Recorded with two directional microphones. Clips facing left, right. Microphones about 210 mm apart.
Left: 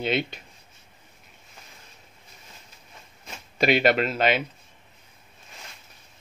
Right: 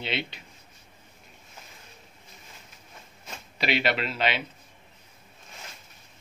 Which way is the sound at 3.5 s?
45° left (ahead or behind).